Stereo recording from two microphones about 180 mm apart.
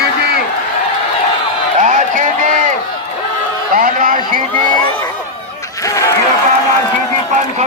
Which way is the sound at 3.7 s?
50° right (ahead or behind).